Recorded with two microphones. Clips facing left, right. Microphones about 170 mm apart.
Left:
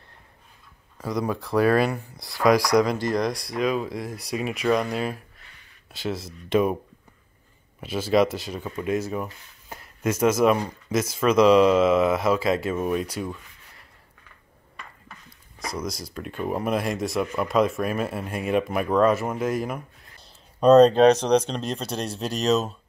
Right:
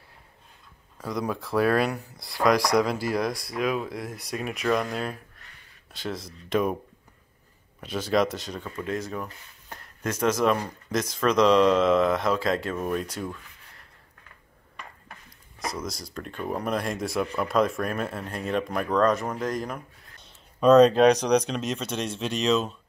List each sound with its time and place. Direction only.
0.9 s speech: centre (ahead or behind)
7.8 s speech: 5° left (ahead or behind)
15.6 s speech: centre (ahead or behind)
20.2 s a sound: 35° left (ahead or behind)
21.2 s speech: 30° left (ahead or behind)